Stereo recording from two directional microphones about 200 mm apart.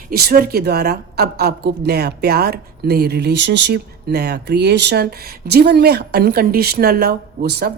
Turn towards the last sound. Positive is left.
turn(degrees=-55)  # may be behind; listen again after turning